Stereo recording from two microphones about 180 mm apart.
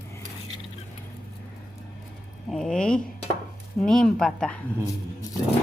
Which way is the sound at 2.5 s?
Centre (ahead or behind).